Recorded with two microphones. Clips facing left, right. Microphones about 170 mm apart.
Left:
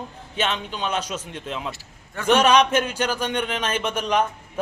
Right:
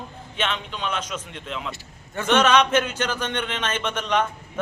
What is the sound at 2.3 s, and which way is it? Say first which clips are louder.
Speech: left 1 dB; 10° left (ahead or behind).